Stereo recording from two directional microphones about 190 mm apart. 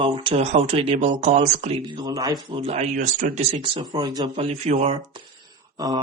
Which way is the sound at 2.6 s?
35° right (ahead or behind).